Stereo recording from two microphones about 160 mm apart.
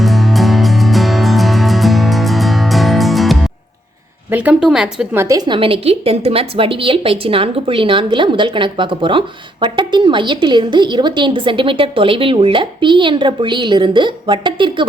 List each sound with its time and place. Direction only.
0.0 s music: centre (ahead or behind)
4.3 s a woman's voice: 10° right (ahead or behind)
5.1 s a woman's voice: 20° right (ahead or behind)